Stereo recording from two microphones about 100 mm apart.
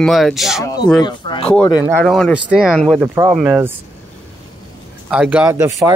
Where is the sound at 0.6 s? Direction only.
35° left (ahead or behind).